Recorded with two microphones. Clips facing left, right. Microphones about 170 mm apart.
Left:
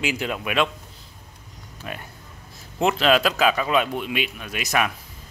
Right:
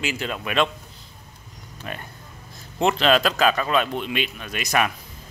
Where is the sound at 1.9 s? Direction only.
5° left (ahead or behind).